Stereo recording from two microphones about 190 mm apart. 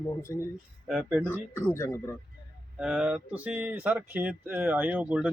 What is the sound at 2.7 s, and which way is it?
Speech, 5° right (ahead or behind).